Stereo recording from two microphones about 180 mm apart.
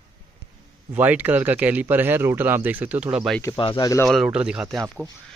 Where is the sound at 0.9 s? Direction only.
10° right (ahead or behind).